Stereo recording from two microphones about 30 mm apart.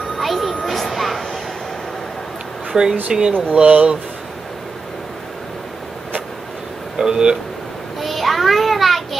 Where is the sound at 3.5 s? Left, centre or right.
Right.